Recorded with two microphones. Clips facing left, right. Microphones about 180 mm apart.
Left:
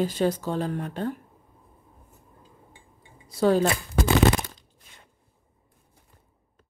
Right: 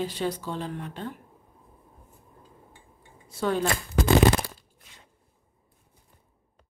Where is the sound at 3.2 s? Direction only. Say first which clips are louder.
Left 6 dB; 35° left (ahead or behind).